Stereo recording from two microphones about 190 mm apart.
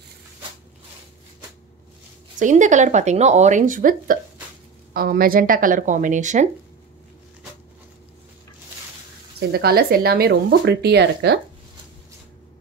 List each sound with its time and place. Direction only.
2.3 s speech: 40° right (ahead or behind)
9.5 s speech: 55° right (ahead or behind)